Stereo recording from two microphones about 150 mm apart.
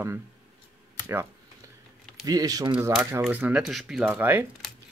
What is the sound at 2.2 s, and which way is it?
Speech, 25° right (ahead or behind).